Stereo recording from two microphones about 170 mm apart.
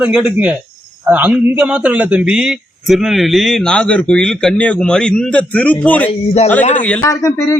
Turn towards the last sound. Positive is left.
turn(degrees=20)  # may be behind; listen again after turning